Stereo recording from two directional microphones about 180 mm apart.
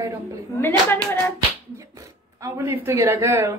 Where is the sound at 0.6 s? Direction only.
10° left (ahead or behind).